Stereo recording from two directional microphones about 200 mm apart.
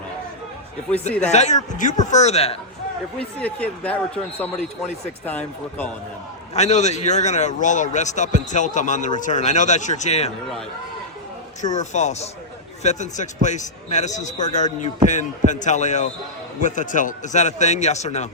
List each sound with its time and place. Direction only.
1.2 s a man's voice: 35° left (ahead or behind)
3.4 s speech: 5° left (ahead or behind)
6.5 s a man's voice: 35° left (ahead or behind)
11.6 s a man's voice: 35° left (ahead or behind)